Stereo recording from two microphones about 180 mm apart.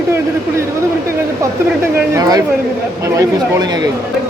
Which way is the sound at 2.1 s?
20° right (ahead or behind).